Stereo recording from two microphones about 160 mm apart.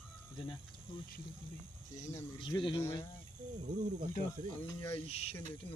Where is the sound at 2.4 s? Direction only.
30° left (ahead or behind).